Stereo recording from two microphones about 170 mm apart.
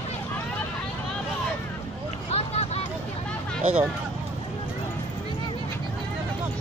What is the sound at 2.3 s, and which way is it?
Vehicle, 35° left (ahead or behind).